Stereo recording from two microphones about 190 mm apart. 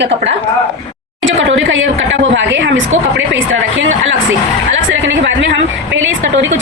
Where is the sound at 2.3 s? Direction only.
70° right (ahead or behind); by 4.2 s 90° right.